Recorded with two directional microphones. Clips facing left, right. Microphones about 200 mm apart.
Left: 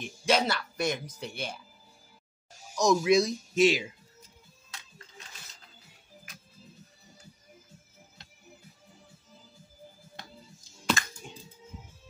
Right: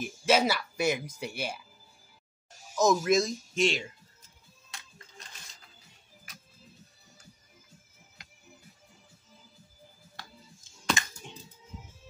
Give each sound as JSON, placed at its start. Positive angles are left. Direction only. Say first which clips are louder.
{"t": 0.0, "sound": "speech", "louder": "right 2 dB", "side_deg": -5}
{"t": 2.7, "sound": "speech", "louder": "left 1 dB", "side_deg": -5}
{"t": 11.0, "sound": "music", "louder": "even", "side_deg": -20}